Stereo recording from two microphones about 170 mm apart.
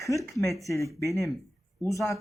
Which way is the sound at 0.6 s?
20° left (ahead or behind).